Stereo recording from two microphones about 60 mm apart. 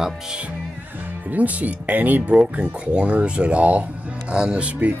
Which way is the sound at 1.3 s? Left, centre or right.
Right.